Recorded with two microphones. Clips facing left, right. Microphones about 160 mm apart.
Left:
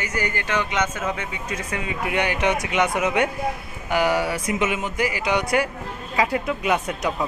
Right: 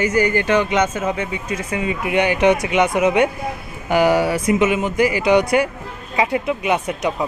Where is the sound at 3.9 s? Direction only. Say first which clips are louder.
Right 6 dB; 35° right (ahead or behind).